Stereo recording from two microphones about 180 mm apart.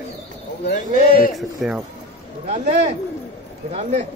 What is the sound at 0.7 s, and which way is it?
Speech, 55° left (ahead or behind).